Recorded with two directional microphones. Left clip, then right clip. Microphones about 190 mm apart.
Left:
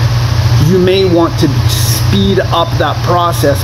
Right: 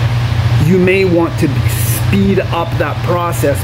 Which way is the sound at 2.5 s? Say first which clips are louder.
Left 4 dB; 30° right (ahead or behind).